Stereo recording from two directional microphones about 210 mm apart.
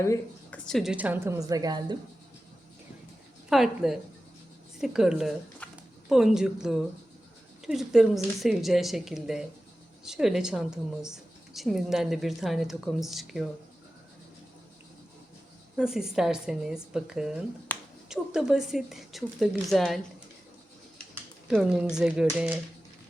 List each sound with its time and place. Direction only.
0.0 s a woman's voice: 10° left (ahead or behind); by 2.0 s 20° right (ahead or behind)
3.5 s a woman's voice: centre (ahead or behind)
15.8 s a woman's voice: 5° right (ahead or behind)
17.7 s a sound: 10° left (ahead or behind)
18.1 s a woman's voice: 5° right (ahead or behind)
21.4 s a woman's voice: 5° right (ahead or behind)